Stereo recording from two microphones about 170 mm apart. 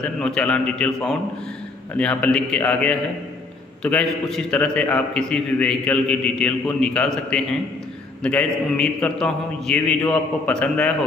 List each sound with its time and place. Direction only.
0.0 s a man's voice: 5° left (ahead or behind)